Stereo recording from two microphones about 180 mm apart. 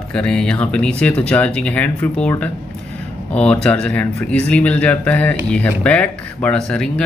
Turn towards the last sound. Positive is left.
turn(degrees=5)  # may be behind; listen again after turning